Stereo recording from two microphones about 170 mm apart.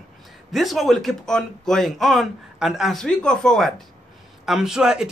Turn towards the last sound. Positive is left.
turn(degrees=-5)  # may be behind; listen again after turning